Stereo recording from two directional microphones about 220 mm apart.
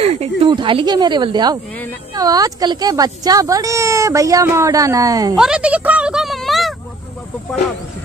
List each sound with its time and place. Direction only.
0.0 s speech: 25° right (ahead or behind)
5.4 s speech: 5° right (ahead or behind)